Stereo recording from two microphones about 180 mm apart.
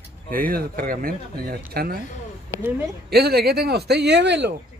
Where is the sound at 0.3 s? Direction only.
50° right (ahead or behind).